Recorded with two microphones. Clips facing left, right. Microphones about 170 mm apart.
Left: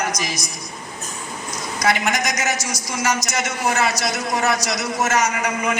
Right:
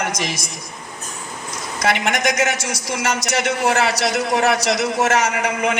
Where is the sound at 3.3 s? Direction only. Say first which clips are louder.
Right 4 dB; 65° right (ahead or behind).